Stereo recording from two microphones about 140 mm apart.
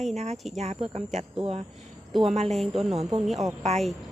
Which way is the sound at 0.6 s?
50° right (ahead or behind).